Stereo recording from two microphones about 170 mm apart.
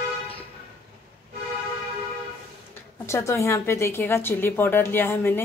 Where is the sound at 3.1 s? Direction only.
15° left (ahead or behind).